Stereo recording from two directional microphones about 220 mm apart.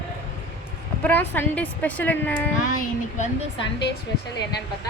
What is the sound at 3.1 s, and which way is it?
Speech, 35° left (ahead or behind).